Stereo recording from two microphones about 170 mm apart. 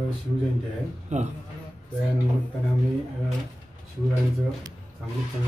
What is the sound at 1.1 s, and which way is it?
Speech, 45° right (ahead or behind).